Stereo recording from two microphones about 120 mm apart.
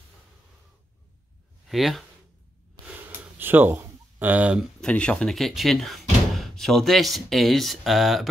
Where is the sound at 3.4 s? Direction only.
15° right (ahead or behind).